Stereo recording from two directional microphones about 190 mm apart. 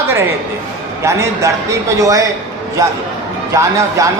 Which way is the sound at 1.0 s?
15° right (ahead or behind).